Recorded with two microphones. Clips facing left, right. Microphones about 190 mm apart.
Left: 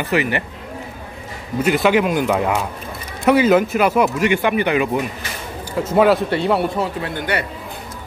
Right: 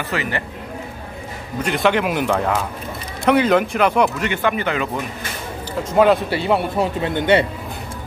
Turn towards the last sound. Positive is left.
turn(degrees=-25)  # may be behind; listen again after turning